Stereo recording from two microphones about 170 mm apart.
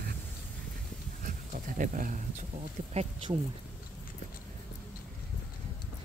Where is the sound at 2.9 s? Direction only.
40° right (ahead or behind).